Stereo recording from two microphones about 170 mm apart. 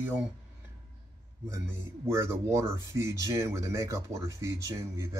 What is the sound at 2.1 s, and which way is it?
Speech, 15° right (ahead or behind).